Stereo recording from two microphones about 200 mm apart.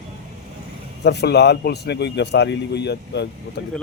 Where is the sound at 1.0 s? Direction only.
55° left (ahead or behind).